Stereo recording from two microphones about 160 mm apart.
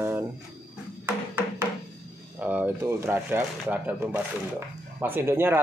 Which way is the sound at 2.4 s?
10° right (ahead or behind).